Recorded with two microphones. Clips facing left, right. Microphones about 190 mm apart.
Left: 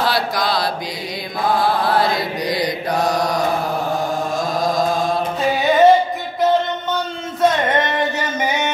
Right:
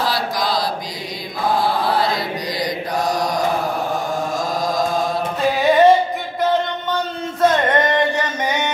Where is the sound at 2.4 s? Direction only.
60° left (ahead or behind).